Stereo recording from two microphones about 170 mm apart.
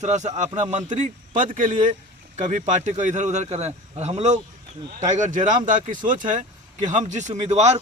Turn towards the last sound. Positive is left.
turn(degrees=-40)  # may be behind; listen again after turning